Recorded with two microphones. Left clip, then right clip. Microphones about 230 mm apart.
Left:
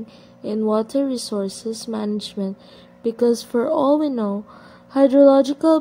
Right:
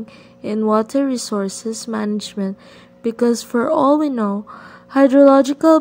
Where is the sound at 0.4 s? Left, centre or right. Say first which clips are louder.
Right 3 dB; right.